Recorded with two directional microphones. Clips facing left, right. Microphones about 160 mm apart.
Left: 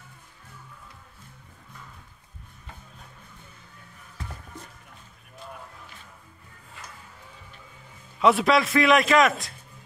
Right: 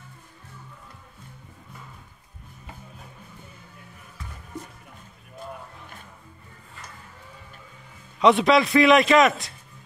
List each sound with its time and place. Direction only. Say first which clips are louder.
8.2 s a man's voice: right 2 dB; centre (ahead or behind)